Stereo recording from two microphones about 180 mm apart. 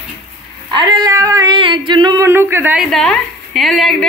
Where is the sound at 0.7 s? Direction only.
25° right (ahead or behind).